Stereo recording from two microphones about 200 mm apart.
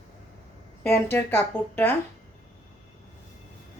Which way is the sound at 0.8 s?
10° left (ahead or behind).